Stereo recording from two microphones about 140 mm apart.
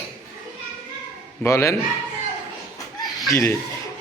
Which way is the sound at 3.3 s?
15° left (ahead or behind).